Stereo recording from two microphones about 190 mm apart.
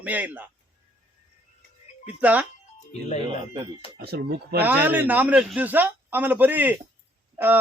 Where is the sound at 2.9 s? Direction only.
35° left (ahead or behind).